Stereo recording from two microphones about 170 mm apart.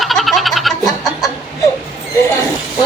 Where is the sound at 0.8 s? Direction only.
20° left (ahead or behind).